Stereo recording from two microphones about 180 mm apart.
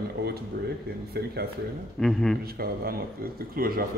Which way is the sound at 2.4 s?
55° right (ahead or behind).